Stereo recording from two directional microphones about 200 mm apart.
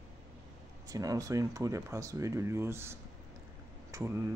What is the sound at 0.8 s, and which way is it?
Speech, 15° right (ahead or behind).